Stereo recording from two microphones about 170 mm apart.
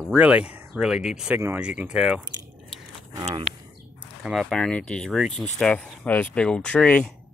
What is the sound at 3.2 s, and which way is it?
Speech, 40° right (ahead or behind).